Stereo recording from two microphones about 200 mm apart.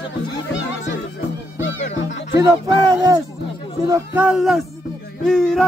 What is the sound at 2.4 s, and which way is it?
Speech, 20° right (ahead or behind).